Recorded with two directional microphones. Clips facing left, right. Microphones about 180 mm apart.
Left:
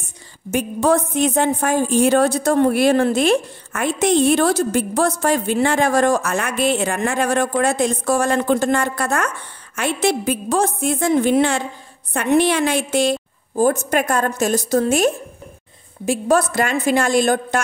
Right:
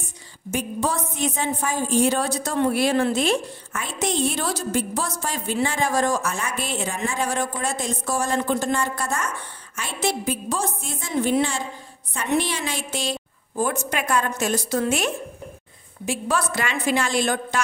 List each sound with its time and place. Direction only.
0.5 s a woman's voice: 60° left (ahead or behind)
13.6 s a woman's voice: 45° left (ahead or behind)